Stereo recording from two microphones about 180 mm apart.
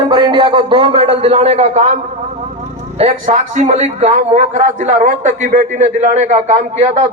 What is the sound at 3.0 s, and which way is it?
A man's voice, 35° right (ahead or behind).